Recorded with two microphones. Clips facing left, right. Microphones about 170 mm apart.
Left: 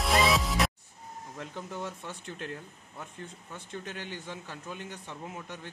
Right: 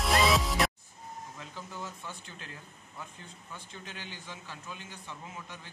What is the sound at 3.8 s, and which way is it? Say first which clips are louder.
Speech: left 3 dB; 50° left (ahead or behind).